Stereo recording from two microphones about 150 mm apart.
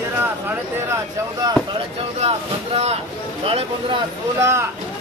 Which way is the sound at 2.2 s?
45° right (ahead or behind).